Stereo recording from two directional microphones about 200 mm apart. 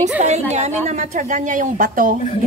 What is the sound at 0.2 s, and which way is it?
A woman's voice, 35° right (ahead or behind).